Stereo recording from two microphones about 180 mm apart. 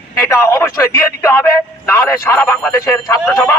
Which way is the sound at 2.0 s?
15° left (ahead or behind).